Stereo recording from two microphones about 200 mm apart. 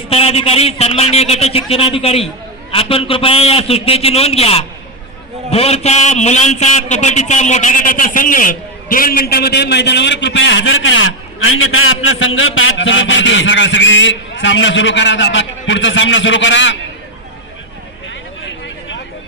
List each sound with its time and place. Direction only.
0.1 s a man's voice: 30° left (ahead or behind); by 16.7 s 65° left (ahead or behind)